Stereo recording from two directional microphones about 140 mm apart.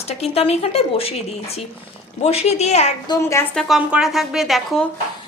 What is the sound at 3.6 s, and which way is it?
A woman's voice, centre (ahead or behind).